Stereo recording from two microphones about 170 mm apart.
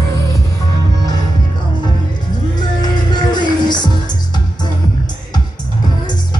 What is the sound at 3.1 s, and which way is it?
Music, 25° left (ahead or behind).